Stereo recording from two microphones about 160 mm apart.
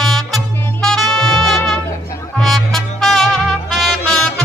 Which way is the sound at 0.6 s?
15° left (ahead or behind).